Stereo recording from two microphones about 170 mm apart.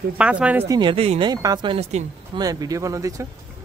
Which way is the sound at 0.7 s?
25° right (ahead or behind).